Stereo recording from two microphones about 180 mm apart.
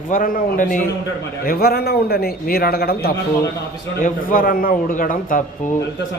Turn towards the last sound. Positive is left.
turn(degrees=50)  # may be behind; listen again after turning